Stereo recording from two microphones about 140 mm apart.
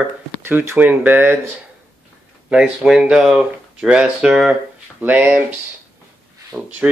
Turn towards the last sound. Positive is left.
turn(degrees=-5)  # may be behind; listen again after turning